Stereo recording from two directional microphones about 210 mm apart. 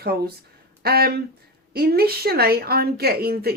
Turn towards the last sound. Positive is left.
turn(degrees=-45)  # may be behind; listen again after turning